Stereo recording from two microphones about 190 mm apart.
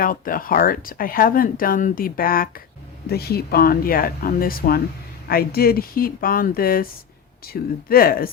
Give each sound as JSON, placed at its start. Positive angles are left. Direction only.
{"t": 0.0, "sound": "speech", "side_deg": 50}